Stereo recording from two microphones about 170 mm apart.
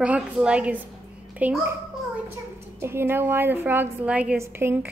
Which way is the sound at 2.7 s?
15° right (ahead or behind).